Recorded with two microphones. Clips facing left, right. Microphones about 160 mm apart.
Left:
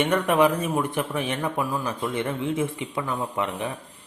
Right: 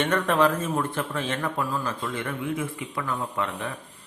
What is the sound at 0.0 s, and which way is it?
A man's voice, 15° left (ahead or behind).